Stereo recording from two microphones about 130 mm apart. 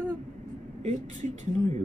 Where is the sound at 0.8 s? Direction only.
60° right (ahead or behind).